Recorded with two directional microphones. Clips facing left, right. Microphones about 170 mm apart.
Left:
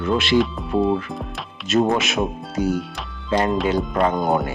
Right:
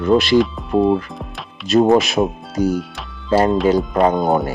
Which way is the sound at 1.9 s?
35° right (ahead or behind).